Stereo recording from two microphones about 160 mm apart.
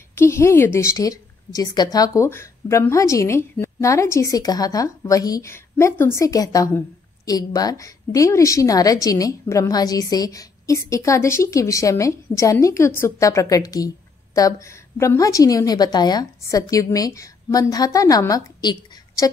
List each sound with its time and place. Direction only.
0.1 s a woman's voice: 15° left (ahead or behind)